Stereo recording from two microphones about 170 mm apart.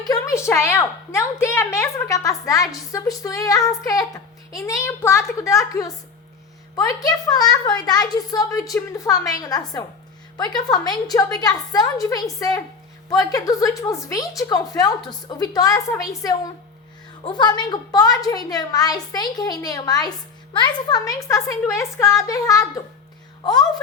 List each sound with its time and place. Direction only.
0.1 s a woman's voice: 15° left (ahead or behind)
17.2 s a woman's voice: 25° left (ahead or behind)